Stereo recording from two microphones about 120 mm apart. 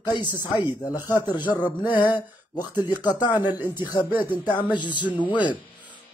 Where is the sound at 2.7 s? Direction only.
35° left (ahead or behind).